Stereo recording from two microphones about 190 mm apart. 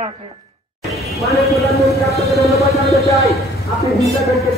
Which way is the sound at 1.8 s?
Centre (ahead or behind).